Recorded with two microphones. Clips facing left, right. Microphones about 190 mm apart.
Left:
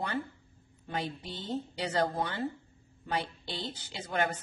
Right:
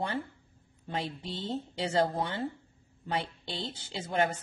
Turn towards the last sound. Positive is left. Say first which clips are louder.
# right 2 dB
turn(degrees=-25)  # may be behind; listen again after turning